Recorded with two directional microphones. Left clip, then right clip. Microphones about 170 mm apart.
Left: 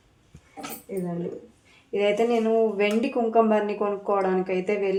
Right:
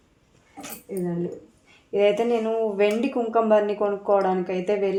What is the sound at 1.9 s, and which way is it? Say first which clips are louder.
Speech: right 2 dB; 30° right (ahead or behind).